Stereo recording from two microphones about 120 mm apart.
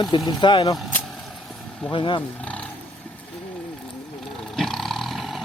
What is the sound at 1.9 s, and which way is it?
Speech, 45° left (ahead or behind).